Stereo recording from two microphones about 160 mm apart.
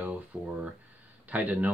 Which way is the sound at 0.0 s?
5° right (ahead or behind).